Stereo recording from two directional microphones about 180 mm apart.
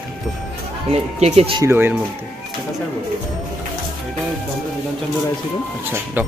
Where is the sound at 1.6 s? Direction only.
10° right (ahead or behind).